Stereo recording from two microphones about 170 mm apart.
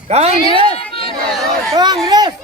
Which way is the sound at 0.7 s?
35° left (ahead or behind).